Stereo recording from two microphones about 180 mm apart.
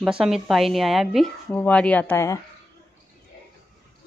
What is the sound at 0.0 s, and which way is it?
Speech, 5° right (ahead or behind).